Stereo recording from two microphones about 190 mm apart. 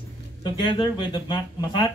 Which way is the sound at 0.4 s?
25° left (ahead or behind).